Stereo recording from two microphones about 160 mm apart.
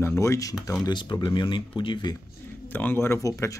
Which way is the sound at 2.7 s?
10° left (ahead or behind).